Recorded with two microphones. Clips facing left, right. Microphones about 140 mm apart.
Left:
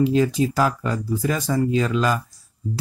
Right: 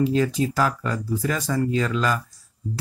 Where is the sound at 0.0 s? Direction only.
20° left (ahead or behind).